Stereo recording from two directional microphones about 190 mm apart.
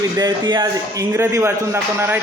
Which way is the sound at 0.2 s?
20° right (ahead or behind).